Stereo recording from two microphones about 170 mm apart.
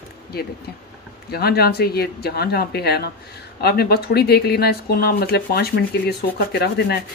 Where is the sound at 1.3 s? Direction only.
65° left (ahead or behind).